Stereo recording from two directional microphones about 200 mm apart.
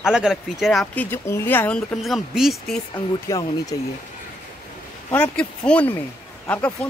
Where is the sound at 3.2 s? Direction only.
15° left (ahead or behind).